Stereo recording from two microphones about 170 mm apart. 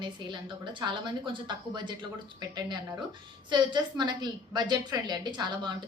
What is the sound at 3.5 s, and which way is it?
A woman's voice, 25° right (ahead or behind).